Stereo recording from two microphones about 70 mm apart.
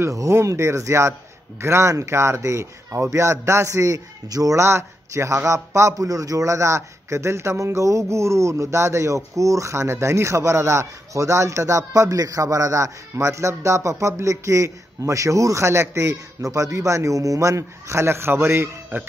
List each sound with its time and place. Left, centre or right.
0.0 s a man's voice: right
4.6 s a man's voice: right